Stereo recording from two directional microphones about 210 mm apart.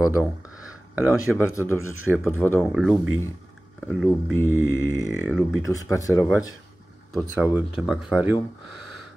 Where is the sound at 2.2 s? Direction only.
10° left (ahead or behind).